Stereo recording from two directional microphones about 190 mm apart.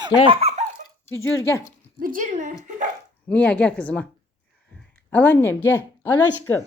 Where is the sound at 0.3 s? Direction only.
30° right (ahead or behind).